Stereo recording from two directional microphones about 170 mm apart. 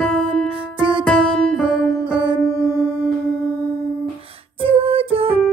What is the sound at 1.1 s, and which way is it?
Music, 5° left (ahead or behind).